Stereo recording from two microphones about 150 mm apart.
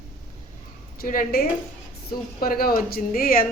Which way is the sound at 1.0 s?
75° left (ahead or behind).